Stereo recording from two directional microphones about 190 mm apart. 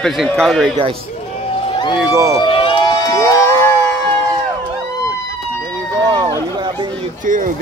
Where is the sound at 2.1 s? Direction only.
15° right (ahead or behind).